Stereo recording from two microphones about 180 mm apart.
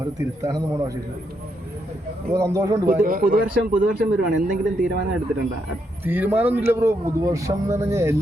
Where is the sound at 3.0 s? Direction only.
50° right (ahead or behind).